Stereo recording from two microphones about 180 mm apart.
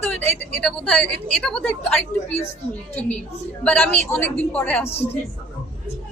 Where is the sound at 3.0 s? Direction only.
10° left (ahead or behind).